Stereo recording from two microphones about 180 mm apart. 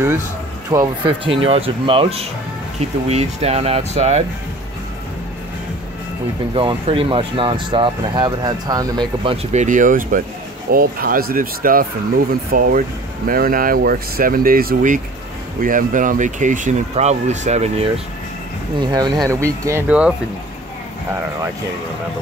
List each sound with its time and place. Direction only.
0.7 s speech: 25° right (ahead or behind)
6.5 s speech: 30° right (ahead or behind)
9.2 s speech: 35° right (ahead or behind)
18.9 s speech: 25° right (ahead or behind); by 20.2 s 5° right (ahead or behind)